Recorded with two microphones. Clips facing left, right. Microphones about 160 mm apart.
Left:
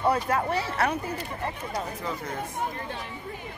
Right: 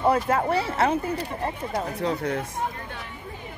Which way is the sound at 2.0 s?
70° right (ahead or behind).